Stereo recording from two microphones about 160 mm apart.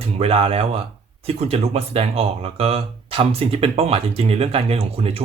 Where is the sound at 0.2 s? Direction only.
40° right (ahead or behind).